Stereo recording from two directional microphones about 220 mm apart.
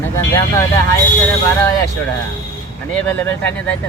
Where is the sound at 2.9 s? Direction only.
5° left (ahead or behind).